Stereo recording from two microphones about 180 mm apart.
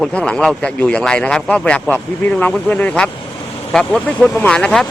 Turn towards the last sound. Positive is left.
turn(degrees=5)  # may be behind; listen again after turning